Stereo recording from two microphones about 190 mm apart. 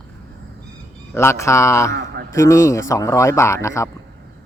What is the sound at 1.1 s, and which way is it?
A man's voice, 15° left (ahead or behind).